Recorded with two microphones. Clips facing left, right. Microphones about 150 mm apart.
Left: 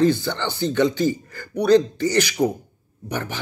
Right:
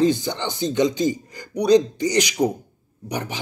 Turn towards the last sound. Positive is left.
turn(degrees=-15)  # may be behind; listen again after turning